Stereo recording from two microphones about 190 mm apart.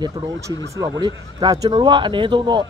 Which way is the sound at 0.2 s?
25° right (ahead or behind).